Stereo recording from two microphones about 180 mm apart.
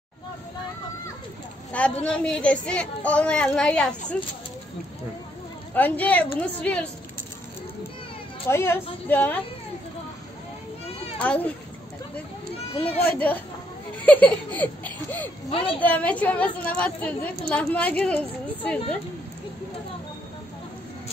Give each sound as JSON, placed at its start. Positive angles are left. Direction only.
{"t": 1.7, "sound": "a woman's voice", "side_deg": 5}
{"t": 5.8, "sound": "a woman's voice", "side_deg": 10}
{"t": 8.5, "sound": "a woman's voice", "side_deg": 15}
{"t": 11.1, "sound": "a woman's voice", "side_deg": 10}
{"t": 12.7, "sound": "speech", "side_deg": 35}
{"t": 13.0, "sound": "a woman's voice", "side_deg": 10}
{"t": 15.5, "sound": "a woman's voice", "side_deg": 30}
{"t": 15.8, "sound": "a woman's voice", "side_deg": 10}